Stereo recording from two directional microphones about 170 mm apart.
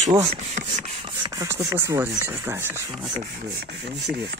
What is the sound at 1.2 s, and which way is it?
Speech, 20° right (ahead or behind).